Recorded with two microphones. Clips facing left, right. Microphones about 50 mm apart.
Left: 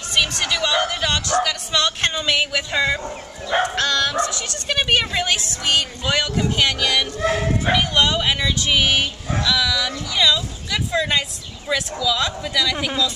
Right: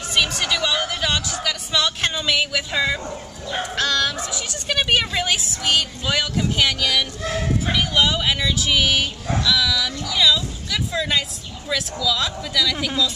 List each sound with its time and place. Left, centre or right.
0.1 s speech: centre
3.4 s speech: left
3.7 s speech: centre